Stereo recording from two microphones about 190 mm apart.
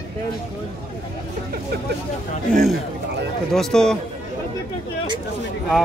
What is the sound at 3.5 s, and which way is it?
Speech, 5° left (ahead or behind).